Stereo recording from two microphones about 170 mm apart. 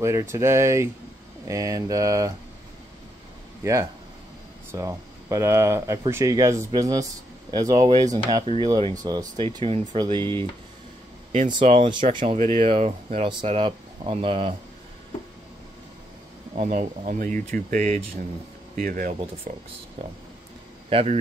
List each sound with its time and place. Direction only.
0.0 s speech: 15° right (ahead or behind)
3.6 s speech: 15° right (ahead or behind)
11.6 s speech: 40° right (ahead or behind)
11.9 s speech: 30° right (ahead or behind)
16.5 s speech: 40° right (ahead or behind)
20.9 s speech: 35° right (ahead or behind)